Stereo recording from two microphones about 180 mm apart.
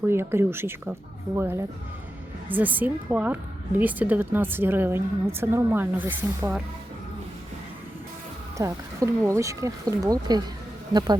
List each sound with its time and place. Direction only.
0.1 s a woman's voice: 15° right (ahead or behind)
8.5 s a woman's voice: 20° right (ahead or behind)